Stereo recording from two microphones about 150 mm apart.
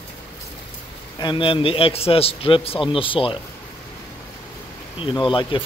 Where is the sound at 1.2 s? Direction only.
30° left (ahead or behind).